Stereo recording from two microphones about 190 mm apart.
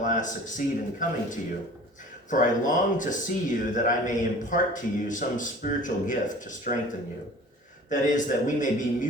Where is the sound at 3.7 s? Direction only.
40° left (ahead or behind).